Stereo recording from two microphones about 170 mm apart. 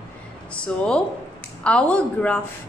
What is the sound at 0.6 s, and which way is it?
A woman's voice, 5° left (ahead or behind).